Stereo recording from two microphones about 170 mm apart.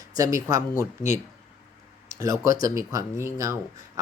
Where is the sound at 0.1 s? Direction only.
20° right (ahead or behind).